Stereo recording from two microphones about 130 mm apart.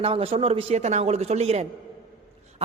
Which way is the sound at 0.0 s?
50° right (ahead or behind).